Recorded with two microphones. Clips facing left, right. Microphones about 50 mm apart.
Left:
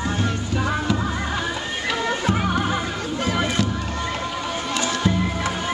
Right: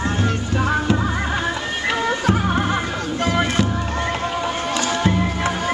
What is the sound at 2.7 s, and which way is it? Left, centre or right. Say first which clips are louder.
Music: right 2 dB; right.